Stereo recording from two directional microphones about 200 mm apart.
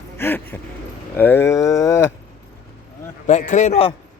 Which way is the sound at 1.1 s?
10° left (ahead or behind).